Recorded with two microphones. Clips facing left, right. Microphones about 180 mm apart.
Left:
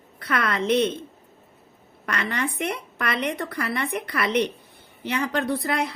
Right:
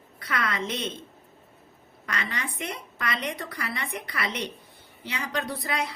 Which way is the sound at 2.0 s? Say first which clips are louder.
Left 6 dB; 60° left (ahead or behind).